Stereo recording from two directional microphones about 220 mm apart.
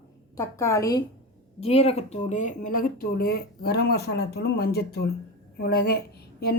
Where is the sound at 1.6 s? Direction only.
25° left (ahead or behind).